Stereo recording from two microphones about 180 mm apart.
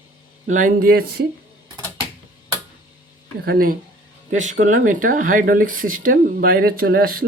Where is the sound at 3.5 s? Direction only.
55° right (ahead or behind).